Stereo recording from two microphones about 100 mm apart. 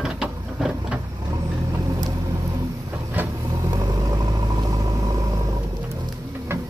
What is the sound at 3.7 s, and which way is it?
Vehicle, 40° right (ahead or behind).